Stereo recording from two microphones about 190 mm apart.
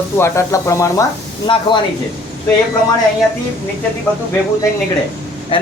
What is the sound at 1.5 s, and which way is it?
Speech, 25° left (ahead or behind).